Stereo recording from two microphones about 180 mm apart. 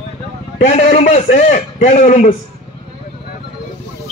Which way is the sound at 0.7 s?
35° left (ahead or behind).